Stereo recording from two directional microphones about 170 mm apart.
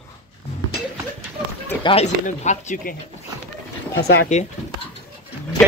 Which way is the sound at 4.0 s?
70° left (ahead or behind).